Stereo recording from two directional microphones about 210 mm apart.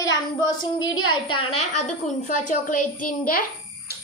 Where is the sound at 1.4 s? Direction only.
25° left (ahead or behind).